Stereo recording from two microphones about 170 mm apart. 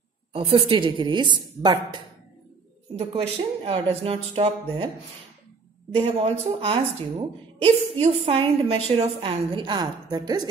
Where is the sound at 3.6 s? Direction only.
35° right (ahead or behind).